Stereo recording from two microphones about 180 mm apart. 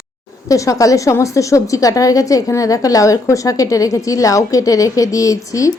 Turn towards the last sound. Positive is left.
turn(degrees=20)  # may be behind; listen again after turning